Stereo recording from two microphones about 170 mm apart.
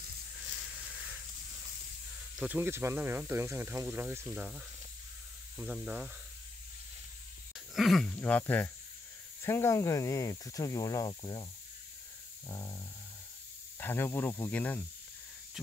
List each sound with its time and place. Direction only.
2.3 s speech: 10° right (ahead or behind)
7.5 s speech: centre (ahead or behind); by 11.4 s 25° left (ahead or behind)
12.4 s speech: 20° left (ahead or behind)